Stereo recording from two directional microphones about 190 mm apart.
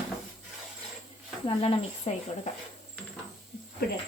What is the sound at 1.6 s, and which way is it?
Speech, 30° left (ahead or behind).